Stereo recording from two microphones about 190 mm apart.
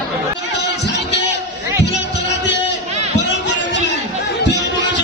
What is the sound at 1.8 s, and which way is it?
Music, 65° left (ahead or behind).